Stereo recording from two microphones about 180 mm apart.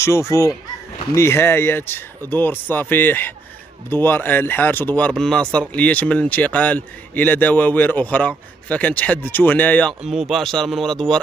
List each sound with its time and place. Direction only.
0.0 s speech: 15° left (ahead or behind)
10.0 s speech: centre (ahead or behind)